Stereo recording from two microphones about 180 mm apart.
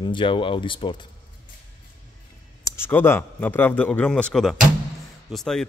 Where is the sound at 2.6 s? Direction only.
10° left (ahead or behind).